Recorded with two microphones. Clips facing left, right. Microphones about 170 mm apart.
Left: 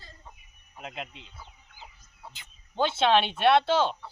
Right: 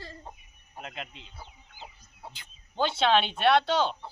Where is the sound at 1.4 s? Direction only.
30° right (ahead or behind).